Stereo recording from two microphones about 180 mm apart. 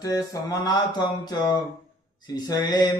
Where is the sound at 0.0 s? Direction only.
20° left (ahead or behind).